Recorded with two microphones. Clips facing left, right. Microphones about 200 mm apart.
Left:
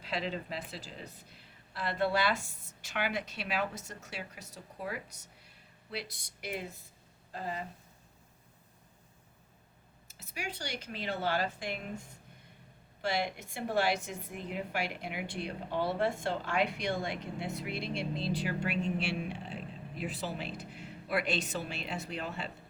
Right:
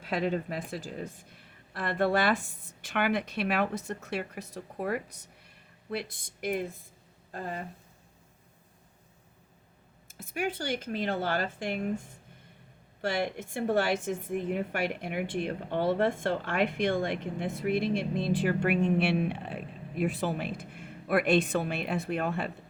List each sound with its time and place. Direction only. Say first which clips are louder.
0.0 s a woman's voice: right 7 dB; 50° right (ahead or behind)
10.1 s a woman's voice: right 9 dB; 50° right (ahead or behind)
13.1 s a woman's voice: right 3 dB; 50° right (ahead or behind)